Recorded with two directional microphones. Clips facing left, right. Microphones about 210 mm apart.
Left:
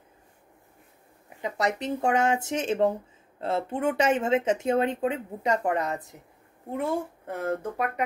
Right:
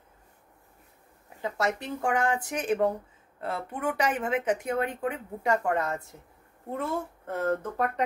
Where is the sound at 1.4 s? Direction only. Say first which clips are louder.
Left 2 dB; 20° left (ahead or behind).